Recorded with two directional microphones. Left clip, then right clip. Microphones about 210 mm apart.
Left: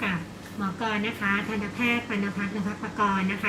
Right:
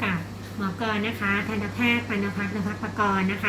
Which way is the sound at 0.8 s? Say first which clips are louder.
Right 1 dB; 15° right (ahead or behind).